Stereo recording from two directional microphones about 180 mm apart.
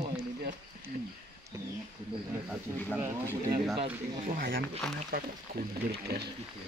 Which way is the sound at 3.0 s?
15° right (ahead or behind).